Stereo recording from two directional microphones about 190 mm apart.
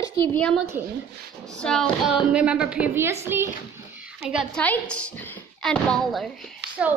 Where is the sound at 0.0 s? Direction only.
15° left (ahead or behind).